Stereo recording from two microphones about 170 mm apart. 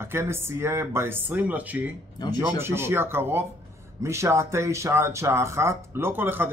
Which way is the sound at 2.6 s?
15° right (ahead or behind).